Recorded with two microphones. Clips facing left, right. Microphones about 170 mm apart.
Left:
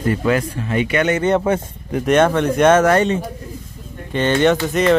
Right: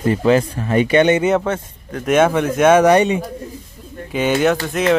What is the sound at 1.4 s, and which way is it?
Speech, 10° left (ahead or behind).